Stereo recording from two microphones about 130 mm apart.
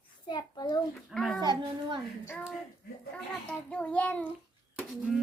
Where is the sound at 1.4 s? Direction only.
35° right (ahead or behind).